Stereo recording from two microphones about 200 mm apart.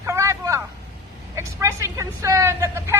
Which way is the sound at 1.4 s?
15° right (ahead or behind).